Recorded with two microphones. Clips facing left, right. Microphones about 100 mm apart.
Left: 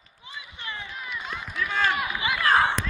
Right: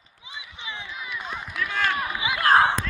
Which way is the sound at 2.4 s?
35° right (ahead or behind).